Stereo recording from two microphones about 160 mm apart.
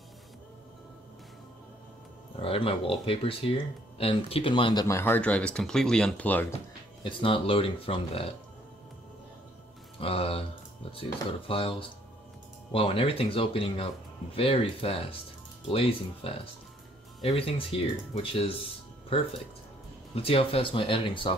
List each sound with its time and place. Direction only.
2.4 s speech: 35° left (ahead or behind)
4.8 s speech: 15° left (ahead or behind)
7.0 s speech: 30° left (ahead or behind)
9.9 s speech: 35° left (ahead or behind)
12.7 s speech: 35° left (ahead or behind)
20.2 s speech: 35° left (ahead or behind)